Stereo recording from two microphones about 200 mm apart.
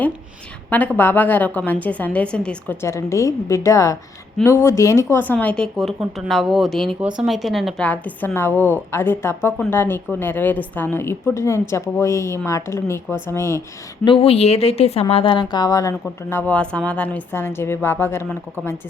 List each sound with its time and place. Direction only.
0.7 s speech: 10° left (ahead or behind)
14.0 s speech: 25° left (ahead or behind); by 18.8 s 10° left (ahead or behind)